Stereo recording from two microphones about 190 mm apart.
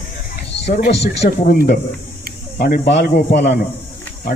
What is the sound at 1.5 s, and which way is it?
Speech, 55° left (ahead or behind).